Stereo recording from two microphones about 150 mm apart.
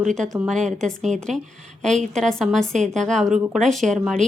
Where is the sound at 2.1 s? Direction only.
5° left (ahead or behind).